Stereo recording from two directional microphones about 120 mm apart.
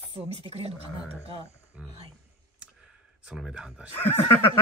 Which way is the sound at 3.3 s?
5° right (ahead or behind).